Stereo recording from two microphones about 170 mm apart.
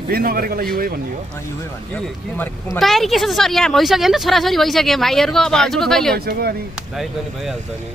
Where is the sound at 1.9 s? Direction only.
10° left (ahead or behind).